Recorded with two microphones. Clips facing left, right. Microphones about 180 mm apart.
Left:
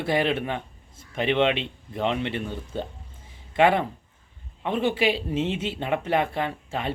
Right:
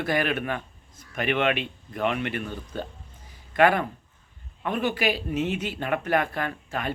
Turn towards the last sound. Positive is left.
turn(degrees=25)  # may be behind; listen again after turning